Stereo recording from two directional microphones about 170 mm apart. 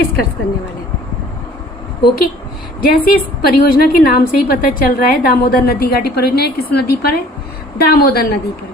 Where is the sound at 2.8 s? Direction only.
60° left (ahead or behind).